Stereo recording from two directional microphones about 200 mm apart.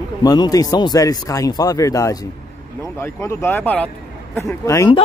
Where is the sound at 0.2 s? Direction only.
20° left (ahead or behind).